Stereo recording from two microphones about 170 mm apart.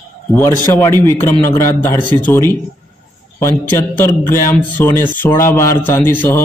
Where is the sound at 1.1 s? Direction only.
15° left (ahead or behind).